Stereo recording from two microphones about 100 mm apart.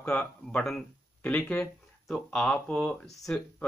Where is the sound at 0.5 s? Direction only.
5° left (ahead or behind).